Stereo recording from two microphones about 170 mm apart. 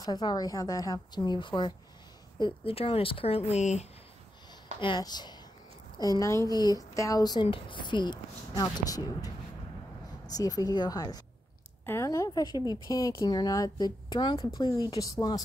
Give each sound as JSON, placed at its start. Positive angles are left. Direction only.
{"t": 0.0, "sound": "speech", "side_deg": 25}
{"t": 4.7, "sound": "speech", "side_deg": 25}
{"t": 11.8, "sound": "a sound", "side_deg": 15}
{"t": 12.8, "sound": "speech", "side_deg": 20}